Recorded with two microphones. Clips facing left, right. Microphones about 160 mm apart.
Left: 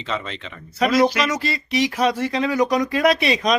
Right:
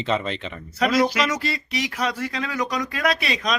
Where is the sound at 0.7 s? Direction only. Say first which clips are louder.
Left 3 dB; 25° left (ahead or behind).